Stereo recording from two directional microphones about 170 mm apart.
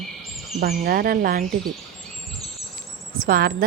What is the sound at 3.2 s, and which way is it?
Speech, 60° right (ahead or behind).